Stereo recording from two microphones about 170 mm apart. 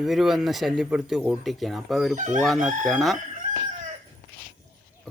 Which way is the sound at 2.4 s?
Centre (ahead or behind).